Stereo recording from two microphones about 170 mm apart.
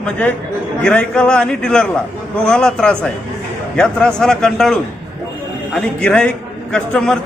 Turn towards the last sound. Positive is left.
turn(degrees=5)  # may be behind; listen again after turning